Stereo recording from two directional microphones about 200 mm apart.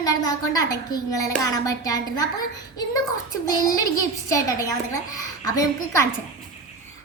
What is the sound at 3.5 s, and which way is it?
A woman's voice, 20° left (ahead or behind).